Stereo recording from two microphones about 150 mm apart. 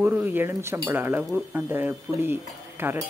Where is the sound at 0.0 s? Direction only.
10° right (ahead or behind).